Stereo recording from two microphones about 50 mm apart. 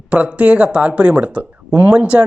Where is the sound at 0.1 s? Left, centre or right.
Right.